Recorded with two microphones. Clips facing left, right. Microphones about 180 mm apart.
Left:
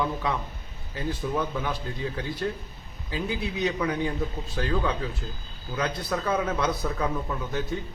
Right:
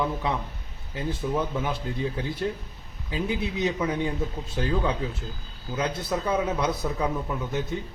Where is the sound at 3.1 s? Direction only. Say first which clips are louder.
Right 2 dB; 20° right (ahead or behind).